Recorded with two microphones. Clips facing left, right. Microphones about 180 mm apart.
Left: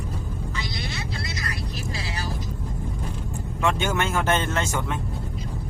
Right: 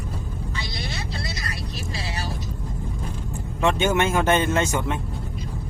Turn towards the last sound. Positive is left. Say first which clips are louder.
# right 4 dB
turn(degrees=-20)  # may be behind; listen again after turning